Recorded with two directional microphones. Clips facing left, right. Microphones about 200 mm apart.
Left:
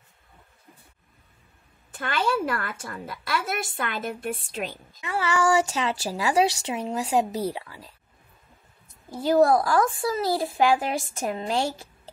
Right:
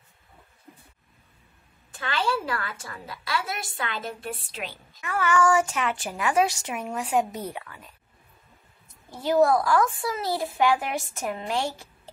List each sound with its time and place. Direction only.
2.0 s a woman's voice: 50° left (ahead or behind)
5.0 s a woman's voice: 30° left (ahead or behind)
9.2 s a woman's voice: 35° left (ahead or behind)